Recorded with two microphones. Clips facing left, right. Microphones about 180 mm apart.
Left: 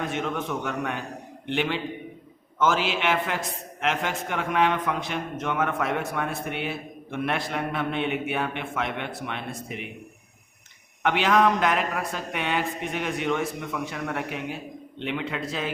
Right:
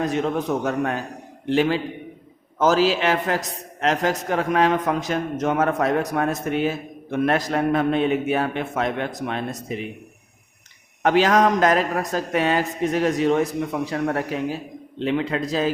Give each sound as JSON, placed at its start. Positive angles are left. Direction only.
{"t": 0.0, "sound": "a man's voice", "side_deg": -35}
{"t": 11.0, "sound": "a man's voice", "side_deg": -40}